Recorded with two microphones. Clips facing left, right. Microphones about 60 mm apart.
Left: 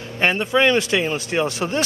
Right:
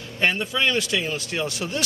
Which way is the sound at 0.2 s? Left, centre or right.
Left.